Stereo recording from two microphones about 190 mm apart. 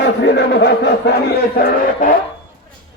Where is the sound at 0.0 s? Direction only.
65° left (ahead or behind).